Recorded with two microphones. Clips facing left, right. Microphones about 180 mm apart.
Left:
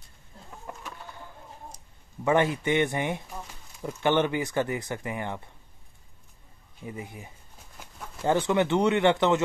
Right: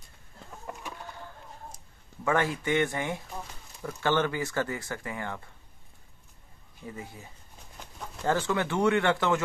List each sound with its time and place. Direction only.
2.2 s speech: 20° left (ahead or behind)
6.8 s speech: 15° left (ahead or behind)
7.7 s a sound: 5° left (ahead or behind)
8.3 s speech: 20° left (ahead or behind)